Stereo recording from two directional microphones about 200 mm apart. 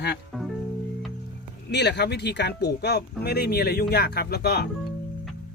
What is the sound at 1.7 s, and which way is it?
Speech, 55° left (ahead or behind).